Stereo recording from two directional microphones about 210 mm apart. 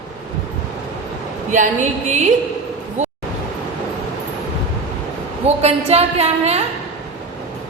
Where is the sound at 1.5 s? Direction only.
35° right (ahead or behind).